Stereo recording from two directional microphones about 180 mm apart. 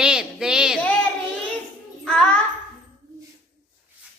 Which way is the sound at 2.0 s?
5° left (ahead or behind).